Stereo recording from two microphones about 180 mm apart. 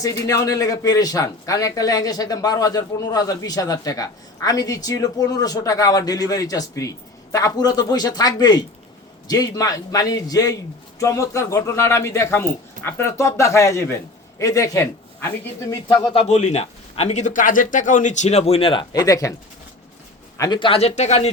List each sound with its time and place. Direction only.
0.0 s a man's voice: 20° left (ahead or behind)
16.3 s speech: 40° left (ahead or behind); by 19.3 s 20° left (ahead or behind)
20.4 s speech: 25° left (ahead or behind)